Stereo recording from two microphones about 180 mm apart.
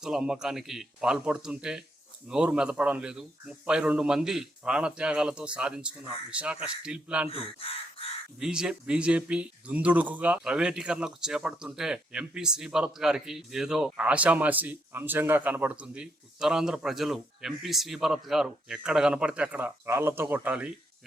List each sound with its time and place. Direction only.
0.0 s speech: 5° right (ahead or behind)
7.3 s speech: 30° left (ahead or behind)
8.4 s speech: 5° right (ahead or behind)